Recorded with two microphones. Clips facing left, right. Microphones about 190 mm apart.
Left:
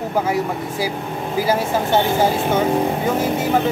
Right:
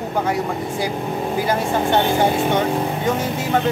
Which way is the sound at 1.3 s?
5° left (ahead or behind).